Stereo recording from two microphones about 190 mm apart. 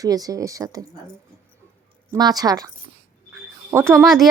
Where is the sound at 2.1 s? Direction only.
20° right (ahead or behind).